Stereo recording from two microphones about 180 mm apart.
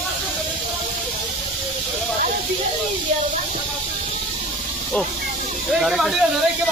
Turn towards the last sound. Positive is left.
turn(degrees=0)  # may be behind; listen again after turning